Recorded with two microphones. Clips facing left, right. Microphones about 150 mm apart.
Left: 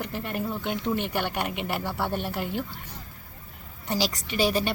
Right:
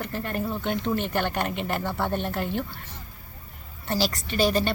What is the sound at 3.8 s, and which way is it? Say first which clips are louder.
Speech: right 1 dB; 15° left (ahead or behind).